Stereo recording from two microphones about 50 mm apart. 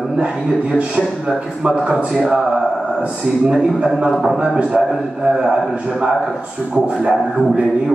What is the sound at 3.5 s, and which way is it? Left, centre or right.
A man's voice, centre.